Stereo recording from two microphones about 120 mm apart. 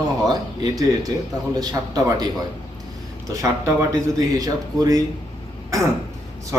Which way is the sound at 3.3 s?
25° right (ahead or behind).